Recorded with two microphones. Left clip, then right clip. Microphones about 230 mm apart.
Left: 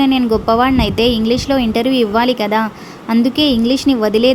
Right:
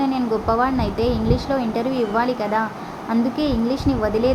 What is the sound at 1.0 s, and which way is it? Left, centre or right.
Speech, left.